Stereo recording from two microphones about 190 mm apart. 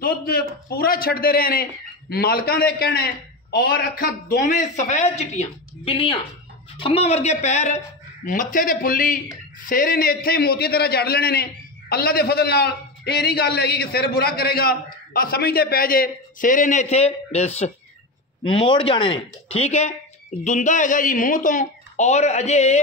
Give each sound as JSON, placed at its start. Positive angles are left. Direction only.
{"t": 0.0, "sound": "a man's voice", "side_deg": 50}